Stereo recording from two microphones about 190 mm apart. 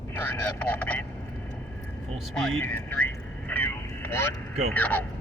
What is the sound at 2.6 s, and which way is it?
Vehicle, 10° left (ahead or behind).